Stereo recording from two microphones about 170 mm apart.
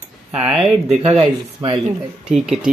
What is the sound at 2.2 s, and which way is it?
Speech, 5° right (ahead or behind).